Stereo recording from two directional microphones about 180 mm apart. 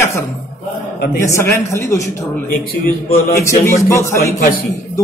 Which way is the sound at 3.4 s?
15° left (ahead or behind).